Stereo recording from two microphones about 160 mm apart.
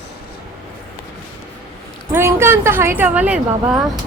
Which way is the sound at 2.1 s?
15° right (ahead or behind).